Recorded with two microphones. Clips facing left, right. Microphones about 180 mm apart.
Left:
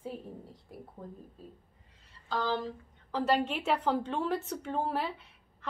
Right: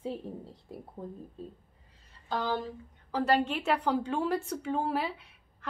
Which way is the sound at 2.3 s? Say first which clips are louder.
Even; 15° right (ahead or behind).